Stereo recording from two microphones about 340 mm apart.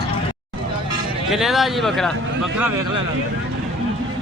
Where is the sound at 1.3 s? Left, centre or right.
Centre.